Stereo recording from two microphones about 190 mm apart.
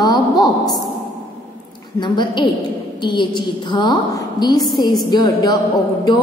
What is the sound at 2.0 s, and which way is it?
A woman's voice, 25° left (ahead or behind).